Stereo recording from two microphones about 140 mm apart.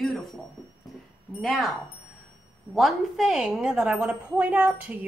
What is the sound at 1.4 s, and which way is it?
Speech, centre (ahead or behind).